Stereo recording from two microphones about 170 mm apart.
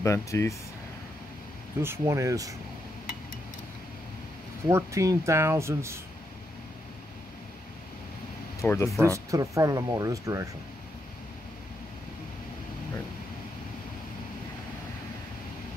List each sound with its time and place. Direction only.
0.0 s speech: 15° left (ahead or behind)
1.8 s speech: 15° right (ahead or behind)
4.6 s speech: 20° right (ahead or behind)
8.5 s speech: 15° left (ahead or behind)
9.0 s speech: 20° right (ahead or behind)